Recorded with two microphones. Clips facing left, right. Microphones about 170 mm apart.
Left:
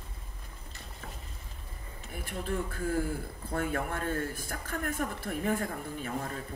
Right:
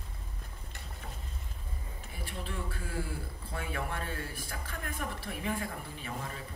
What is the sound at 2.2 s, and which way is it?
Speech, 50° left (ahead or behind).